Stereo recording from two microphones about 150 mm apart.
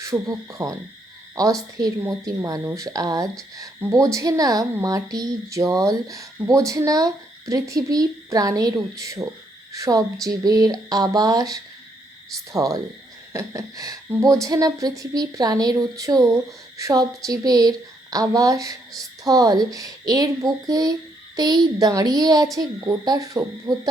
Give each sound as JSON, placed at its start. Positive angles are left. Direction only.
{"t": 0.0, "sound": "a woman's voice", "side_deg": -20}
{"t": 1.8, "sound": "a woman's voice", "side_deg": -20}